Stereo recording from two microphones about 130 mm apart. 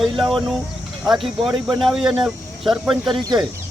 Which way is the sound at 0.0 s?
Centre (ahead or behind).